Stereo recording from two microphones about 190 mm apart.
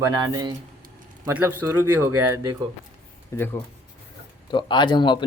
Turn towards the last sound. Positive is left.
turn(degrees=25)  # may be behind; listen again after turning